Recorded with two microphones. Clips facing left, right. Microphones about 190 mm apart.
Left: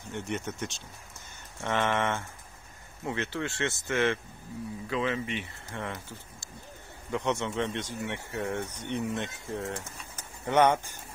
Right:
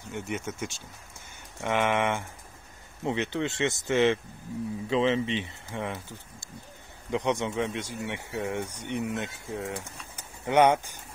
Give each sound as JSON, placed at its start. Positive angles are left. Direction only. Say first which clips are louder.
{"t": 0.1, "sound": "speech", "louder": "even", "side_deg": -5}